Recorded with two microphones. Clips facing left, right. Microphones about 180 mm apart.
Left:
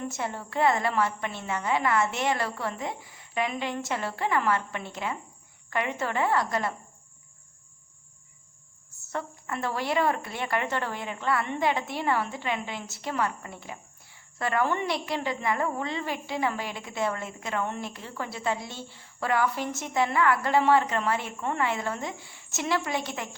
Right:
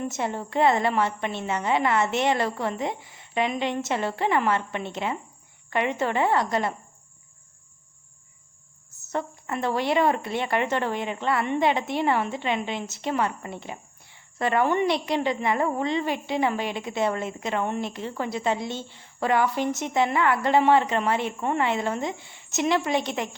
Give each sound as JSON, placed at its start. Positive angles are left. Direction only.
{"t": 0.1, "sound": "speech", "side_deg": -20}
{"t": 8.9, "sound": "speech", "side_deg": -20}